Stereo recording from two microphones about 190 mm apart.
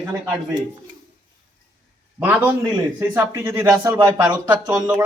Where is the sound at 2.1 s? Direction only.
10° right (ahead or behind).